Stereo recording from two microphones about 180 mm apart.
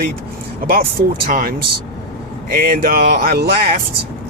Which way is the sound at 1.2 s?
50° right (ahead or behind).